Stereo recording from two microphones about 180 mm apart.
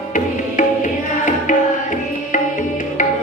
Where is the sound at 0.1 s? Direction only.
45° left (ahead or behind).